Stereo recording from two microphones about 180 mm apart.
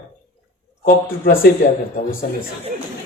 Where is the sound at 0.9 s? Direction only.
50° left (ahead or behind).